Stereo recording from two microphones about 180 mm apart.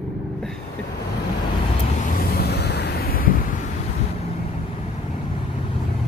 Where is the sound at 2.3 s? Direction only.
65° left (ahead or behind).